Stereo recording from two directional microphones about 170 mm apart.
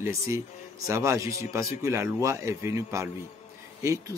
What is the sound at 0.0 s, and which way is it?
A man's voice, 15° right (ahead or behind).